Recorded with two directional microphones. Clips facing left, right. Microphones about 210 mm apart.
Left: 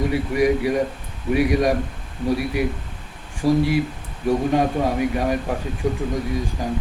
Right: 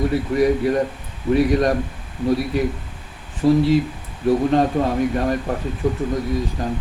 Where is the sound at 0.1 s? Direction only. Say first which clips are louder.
Right 1 dB; 10° left (ahead or behind).